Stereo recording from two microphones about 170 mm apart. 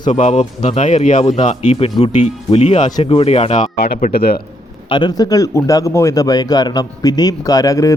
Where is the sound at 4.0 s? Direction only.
65° left (ahead or behind).